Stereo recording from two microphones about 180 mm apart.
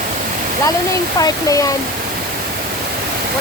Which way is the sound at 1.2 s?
20° left (ahead or behind).